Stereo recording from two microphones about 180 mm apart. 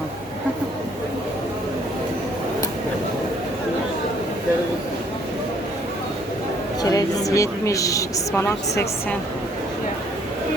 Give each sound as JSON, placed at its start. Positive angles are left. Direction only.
{"t": 6.8, "sound": "speech", "side_deg": 20}